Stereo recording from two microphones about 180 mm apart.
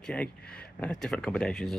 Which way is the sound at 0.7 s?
5° left (ahead or behind).